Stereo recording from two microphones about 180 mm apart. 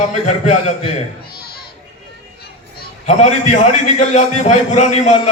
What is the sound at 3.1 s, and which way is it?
A man's voice, 40° left (ahead or behind).